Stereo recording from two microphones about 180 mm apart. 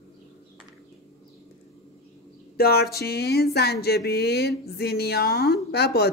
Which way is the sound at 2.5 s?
60° left (ahead or behind).